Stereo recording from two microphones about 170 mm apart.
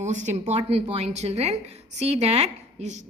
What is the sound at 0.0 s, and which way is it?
A woman's voice, 45° right (ahead or behind).